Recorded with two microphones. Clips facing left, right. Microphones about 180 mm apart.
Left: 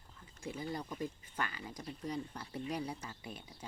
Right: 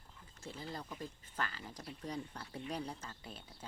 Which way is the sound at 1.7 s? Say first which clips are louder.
Left 3 dB; 5° right (ahead or behind).